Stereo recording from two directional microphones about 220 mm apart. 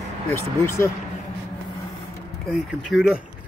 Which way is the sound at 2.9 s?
5° right (ahead or behind).